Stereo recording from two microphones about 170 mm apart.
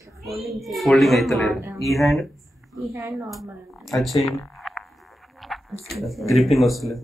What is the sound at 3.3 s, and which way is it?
Speech, centre (ahead or behind).